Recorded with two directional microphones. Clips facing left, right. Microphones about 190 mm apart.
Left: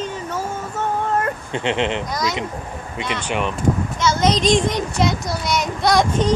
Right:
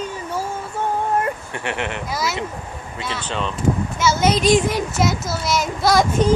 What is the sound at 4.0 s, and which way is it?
Speech, 5° right (ahead or behind).